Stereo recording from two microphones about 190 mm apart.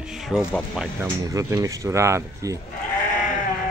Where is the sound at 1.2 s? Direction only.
15° right (ahead or behind).